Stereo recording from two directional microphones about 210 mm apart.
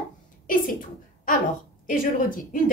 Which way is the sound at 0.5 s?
40° left (ahead or behind).